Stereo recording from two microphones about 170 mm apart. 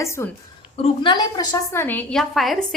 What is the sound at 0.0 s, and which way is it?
Speech, 15° left (ahead or behind).